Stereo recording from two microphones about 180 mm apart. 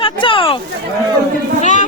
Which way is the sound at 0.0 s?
30° left (ahead or behind).